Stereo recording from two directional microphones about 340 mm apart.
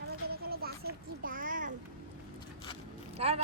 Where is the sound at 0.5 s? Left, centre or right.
Right.